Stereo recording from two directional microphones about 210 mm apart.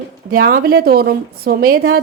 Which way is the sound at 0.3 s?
45° right (ahead or behind).